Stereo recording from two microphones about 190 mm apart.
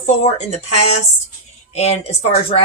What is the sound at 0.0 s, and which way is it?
A woman's voice, 35° left (ahead or behind).